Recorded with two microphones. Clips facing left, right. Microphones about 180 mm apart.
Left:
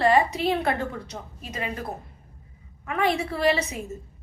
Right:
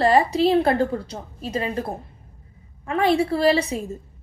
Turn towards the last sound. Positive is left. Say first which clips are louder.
# right 4 dB
turn(degrees=-30)  # may be behind; listen again after turning